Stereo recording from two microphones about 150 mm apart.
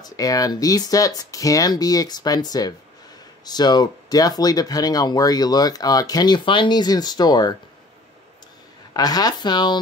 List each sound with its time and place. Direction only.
0.0 s speech: 25° left (ahead or behind)
8.9 s speech: 25° left (ahead or behind)